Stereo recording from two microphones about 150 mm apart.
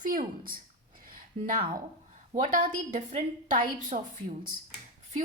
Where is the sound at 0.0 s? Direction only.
65° right (ahead or behind).